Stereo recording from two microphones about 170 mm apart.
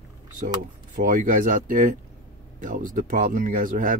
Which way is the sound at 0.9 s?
50° right (ahead or behind).